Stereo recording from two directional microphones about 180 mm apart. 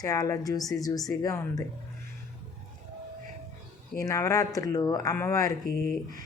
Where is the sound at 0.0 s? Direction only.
20° left (ahead or behind).